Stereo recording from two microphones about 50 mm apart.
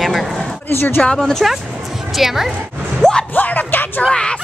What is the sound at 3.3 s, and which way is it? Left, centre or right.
Music, left.